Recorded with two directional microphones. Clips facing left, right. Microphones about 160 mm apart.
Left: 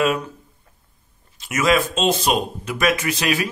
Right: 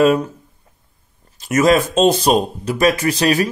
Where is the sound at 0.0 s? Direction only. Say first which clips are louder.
Right 7 dB; 35° right (ahead or behind).